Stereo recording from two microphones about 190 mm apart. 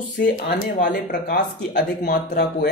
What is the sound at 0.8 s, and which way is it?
Speech, 65° left (ahead or behind).